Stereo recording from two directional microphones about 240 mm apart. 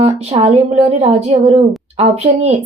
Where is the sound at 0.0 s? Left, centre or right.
Right.